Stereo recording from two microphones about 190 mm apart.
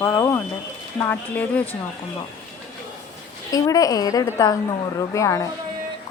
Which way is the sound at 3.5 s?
20° left (ahead or behind).